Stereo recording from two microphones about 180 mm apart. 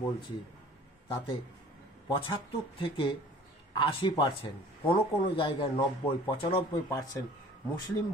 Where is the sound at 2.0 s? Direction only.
30° left (ahead or behind).